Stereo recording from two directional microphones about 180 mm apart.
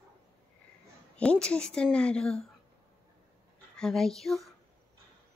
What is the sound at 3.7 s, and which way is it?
Speech, 5° left (ahead or behind).